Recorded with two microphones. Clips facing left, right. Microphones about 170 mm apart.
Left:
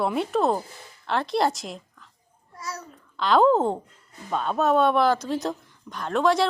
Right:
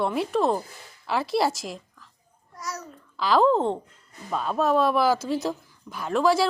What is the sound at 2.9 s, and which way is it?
A woman's voice, centre (ahead or behind).